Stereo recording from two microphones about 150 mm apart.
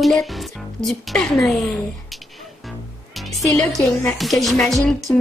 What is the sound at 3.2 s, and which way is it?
Music, centre (ahead or behind).